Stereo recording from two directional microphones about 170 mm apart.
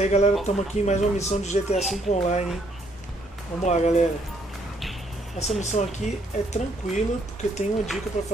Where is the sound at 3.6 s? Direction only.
40° left (ahead or behind).